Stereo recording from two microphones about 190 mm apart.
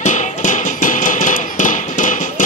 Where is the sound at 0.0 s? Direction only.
40° left (ahead or behind).